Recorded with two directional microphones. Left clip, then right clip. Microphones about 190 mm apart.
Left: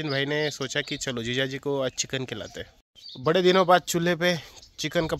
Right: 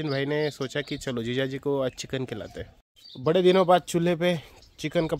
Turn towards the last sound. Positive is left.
turn(degrees=0)  # may be behind; listen again after turning